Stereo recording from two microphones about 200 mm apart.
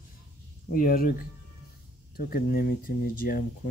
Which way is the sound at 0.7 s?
45° left (ahead or behind).